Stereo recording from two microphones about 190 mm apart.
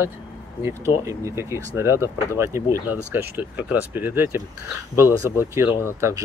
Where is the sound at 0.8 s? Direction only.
15° right (ahead or behind).